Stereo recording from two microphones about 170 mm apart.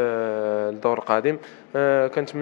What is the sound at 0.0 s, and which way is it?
A man's voice, 20° left (ahead or behind).